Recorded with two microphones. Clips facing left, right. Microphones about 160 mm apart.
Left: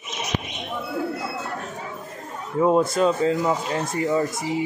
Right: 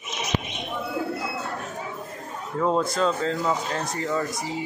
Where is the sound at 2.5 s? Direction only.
15° left (ahead or behind).